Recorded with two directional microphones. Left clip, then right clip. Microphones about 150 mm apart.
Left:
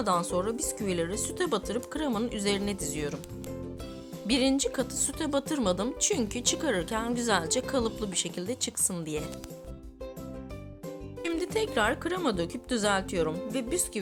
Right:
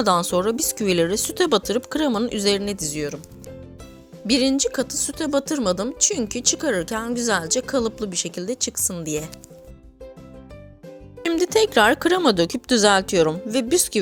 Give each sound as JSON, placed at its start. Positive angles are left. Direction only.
{"t": 0.0, "sound": "a woman's voice", "side_deg": -45}
{"t": 4.3, "sound": "a woman's voice", "side_deg": -30}
{"t": 11.3, "sound": "speech", "side_deg": -45}